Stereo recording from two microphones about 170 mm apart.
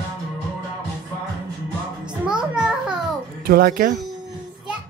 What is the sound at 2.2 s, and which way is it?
Music, 5° right (ahead or behind).